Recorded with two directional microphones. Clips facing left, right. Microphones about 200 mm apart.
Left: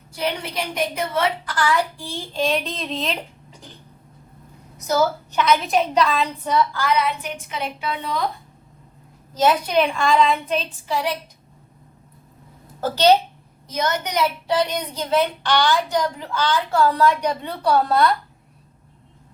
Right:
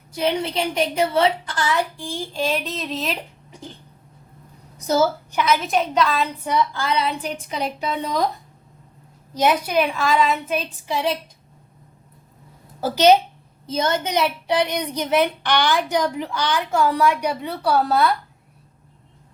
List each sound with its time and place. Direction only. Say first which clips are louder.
0.1 s a woman's voice: right 4 dB; 20° right (ahead or behind); by 3.2 s 5° right (ahead or behind)
5.3 s a woman's voice: left 1 dB; 10° right (ahead or behind)
6.5 s a woman's voice: left 2 dB; 20° right (ahead or behind); by 8.2 s 40° right (ahead or behind)
9.3 s a woman's voice: left 1 dB; 15° right (ahead or behind)
10.8 s a woman's voice: right 2 dB; 20° right (ahead or behind)
12.8 s a woman's voice: right 1 dB; 10° right (ahead or behind)
13.7 s a woman's voice: right 2 dB; 25° right (ahead or behind); by 18.1 s 5° right (ahead or behind)